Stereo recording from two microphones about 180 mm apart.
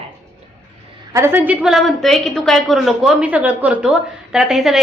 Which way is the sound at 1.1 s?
15° right (ahead or behind).